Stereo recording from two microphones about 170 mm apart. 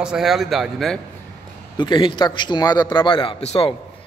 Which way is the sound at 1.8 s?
30° left (ahead or behind).